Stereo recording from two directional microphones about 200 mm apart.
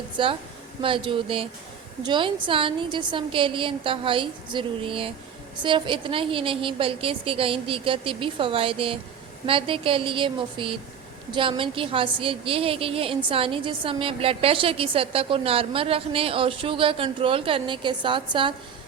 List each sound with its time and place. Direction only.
0.2 s a woman's voice: 25° right (ahead or behind)